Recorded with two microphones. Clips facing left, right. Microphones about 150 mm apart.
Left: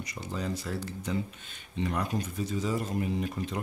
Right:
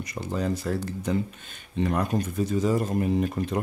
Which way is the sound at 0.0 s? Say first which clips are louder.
Right 6 dB; 50° right (ahead or behind).